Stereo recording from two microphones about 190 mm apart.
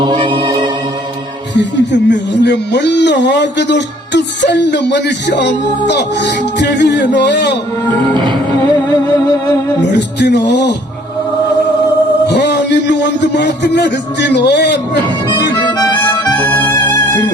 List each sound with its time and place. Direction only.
0.0 s music: 25° right (ahead or behind)
1.5 s speech: 65° left (ahead or behind)
9.9 s speech: 65° left (ahead or behind)
12.3 s a man's voice: 65° left (ahead or behind)
15.8 s harmonica: 20° left (ahead or behind)